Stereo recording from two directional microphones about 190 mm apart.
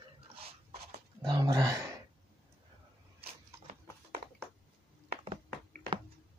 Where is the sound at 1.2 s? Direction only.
20° right (ahead or behind).